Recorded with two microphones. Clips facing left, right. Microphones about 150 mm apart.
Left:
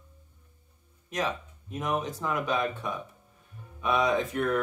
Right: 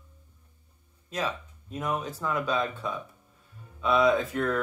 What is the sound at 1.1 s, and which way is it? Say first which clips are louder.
Speech: left 1 dB; 15° left (ahead or behind).